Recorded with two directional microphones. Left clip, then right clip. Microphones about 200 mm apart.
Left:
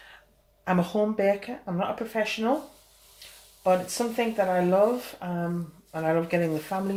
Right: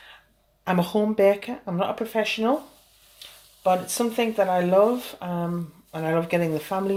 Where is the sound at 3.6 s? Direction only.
40° right (ahead or behind).